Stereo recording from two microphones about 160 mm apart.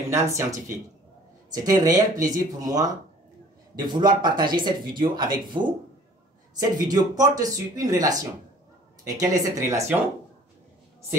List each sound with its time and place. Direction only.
0.1 s speech: 20° right (ahead or behind)